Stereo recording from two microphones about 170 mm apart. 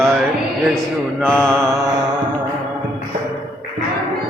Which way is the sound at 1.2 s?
5° left (ahead or behind).